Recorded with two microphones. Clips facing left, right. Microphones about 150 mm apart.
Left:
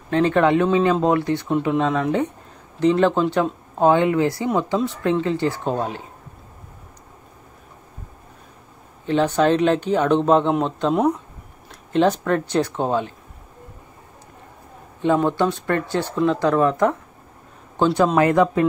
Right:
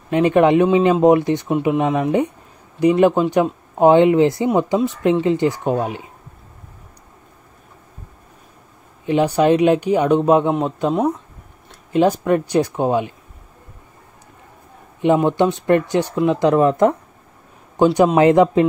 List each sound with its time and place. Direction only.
0.1 s speech: 15° right (ahead or behind)
9.0 s a man's voice: 10° right (ahead or behind)
15.0 s speech: 15° right (ahead or behind)